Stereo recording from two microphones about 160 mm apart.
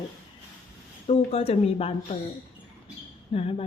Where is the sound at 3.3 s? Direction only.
40° left (ahead or behind).